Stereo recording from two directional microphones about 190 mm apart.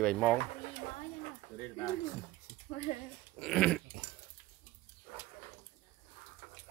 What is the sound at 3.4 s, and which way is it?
Speech, 5° left (ahead or behind).